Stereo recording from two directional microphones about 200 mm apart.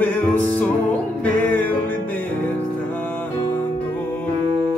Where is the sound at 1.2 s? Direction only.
10° left (ahead or behind).